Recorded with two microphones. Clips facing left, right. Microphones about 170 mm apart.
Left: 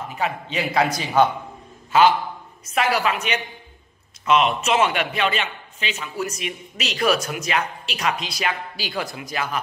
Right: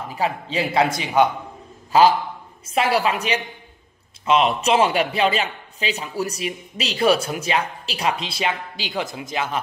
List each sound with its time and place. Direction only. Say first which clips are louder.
0.1 s a man's voice: right 3 dB; 30° right (ahead or behind); by 1.3 s 15° right (ahead or behind)
1.9 s a man's voice: right 1 dB; 35° right (ahead or behind)